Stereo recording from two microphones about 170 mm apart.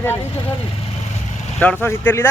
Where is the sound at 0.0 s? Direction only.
10° left (ahead or behind).